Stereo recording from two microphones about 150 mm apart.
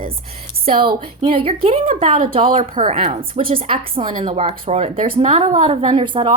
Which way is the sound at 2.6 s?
65° right (ahead or behind).